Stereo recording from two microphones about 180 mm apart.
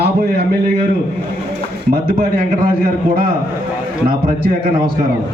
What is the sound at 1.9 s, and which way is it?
Speech, 50° right (ahead or behind).